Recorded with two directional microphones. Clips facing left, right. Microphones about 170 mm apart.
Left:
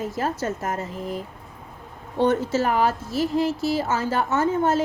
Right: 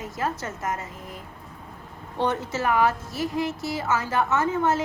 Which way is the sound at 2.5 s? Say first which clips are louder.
Left 2 dB; 30° left (ahead or behind).